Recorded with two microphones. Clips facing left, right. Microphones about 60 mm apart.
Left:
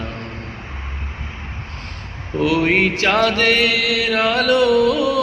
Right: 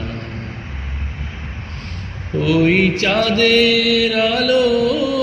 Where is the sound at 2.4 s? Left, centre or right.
Left.